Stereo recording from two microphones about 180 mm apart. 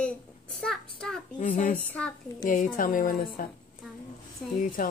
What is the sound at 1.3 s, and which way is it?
Speech, 45° left (ahead or behind).